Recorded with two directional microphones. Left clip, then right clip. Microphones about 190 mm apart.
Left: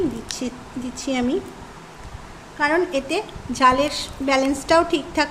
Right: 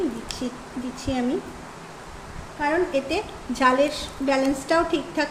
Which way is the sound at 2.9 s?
15° left (ahead or behind).